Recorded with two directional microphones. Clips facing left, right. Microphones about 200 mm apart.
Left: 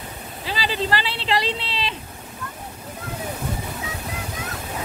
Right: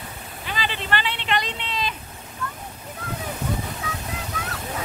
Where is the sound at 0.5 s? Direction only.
35° left (ahead or behind).